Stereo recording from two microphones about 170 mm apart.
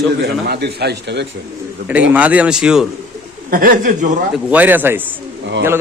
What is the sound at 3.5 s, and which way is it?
Speech, 55° right (ahead or behind).